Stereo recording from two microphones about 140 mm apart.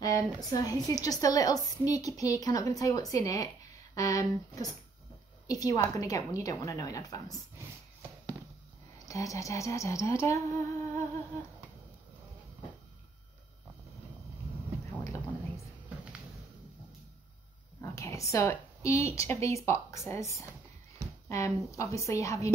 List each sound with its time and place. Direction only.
0.5 s a woman's voice: 25° left (ahead or behind)
9.0 s a woman's voice: 25° left (ahead or behind)
15.0 s a sound: 20° left (ahead or behind)
17.9 s a woman's voice: 20° left (ahead or behind)